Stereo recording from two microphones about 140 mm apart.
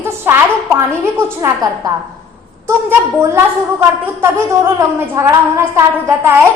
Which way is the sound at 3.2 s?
20° right (ahead or behind).